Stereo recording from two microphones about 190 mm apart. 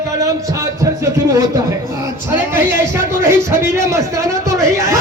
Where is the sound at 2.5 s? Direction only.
10° right (ahead or behind).